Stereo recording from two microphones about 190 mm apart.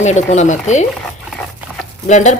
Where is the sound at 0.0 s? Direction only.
35° left (ahead or behind).